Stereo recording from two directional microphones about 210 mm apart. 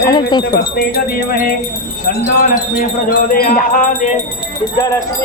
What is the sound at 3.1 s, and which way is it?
Music, 40° left (ahead or behind).